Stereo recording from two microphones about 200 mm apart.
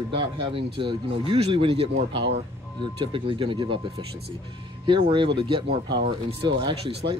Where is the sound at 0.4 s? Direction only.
25° right (ahead or behind).